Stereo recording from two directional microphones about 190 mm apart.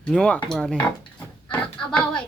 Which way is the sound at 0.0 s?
5° left (ahead or behind).